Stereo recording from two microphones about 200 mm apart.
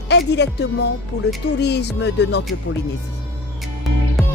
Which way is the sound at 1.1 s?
90° left.